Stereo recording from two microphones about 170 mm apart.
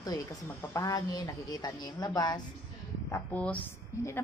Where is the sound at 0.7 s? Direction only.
20° left (ahead or behind).